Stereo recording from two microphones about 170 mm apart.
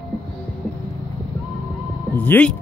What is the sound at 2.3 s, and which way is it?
Speech, 10° left (ahead or behind).